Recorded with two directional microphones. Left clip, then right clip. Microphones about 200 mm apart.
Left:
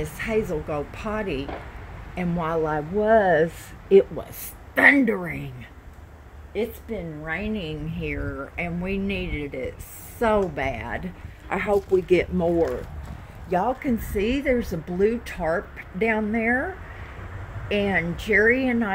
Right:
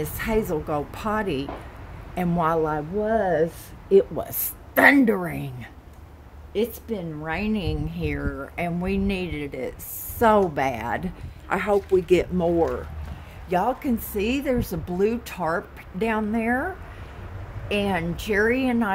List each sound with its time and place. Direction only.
0.0 s a woman's voice: 15° right (ahead or behind)
3.1 s speech: centre (ahead or behind)
4.7 s a woman's voice: 15° right (ahead or behind)
6.5 s a woman's voice: 30° right (ahead or behind); by 16.6 s 15° right (ahead or behind)
17.6 s a woman's voice: 20° right (ahead or behind)